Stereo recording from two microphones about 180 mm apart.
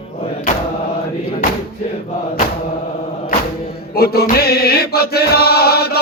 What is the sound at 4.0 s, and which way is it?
Chant, 60° left (ahead or behind).